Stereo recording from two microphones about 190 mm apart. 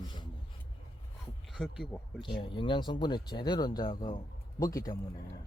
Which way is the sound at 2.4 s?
25° left (ahead or behind).